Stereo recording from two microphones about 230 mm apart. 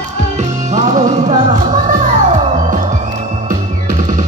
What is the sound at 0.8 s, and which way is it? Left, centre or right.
Music, right.